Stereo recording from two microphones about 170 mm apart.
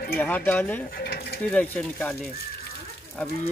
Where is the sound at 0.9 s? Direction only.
65° left (ahead or behind).